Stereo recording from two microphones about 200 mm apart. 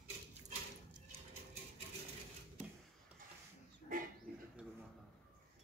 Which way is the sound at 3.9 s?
40° right (ahead or behind).